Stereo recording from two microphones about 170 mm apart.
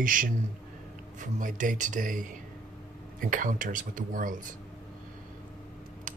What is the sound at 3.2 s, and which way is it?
Speech, 50° right (ahead or behind).